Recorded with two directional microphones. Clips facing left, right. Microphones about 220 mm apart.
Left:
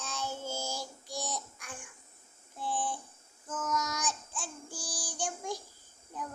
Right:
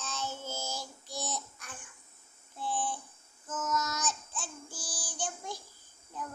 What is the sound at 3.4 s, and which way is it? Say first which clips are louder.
Child singing: even; 5° right (ahead or behind).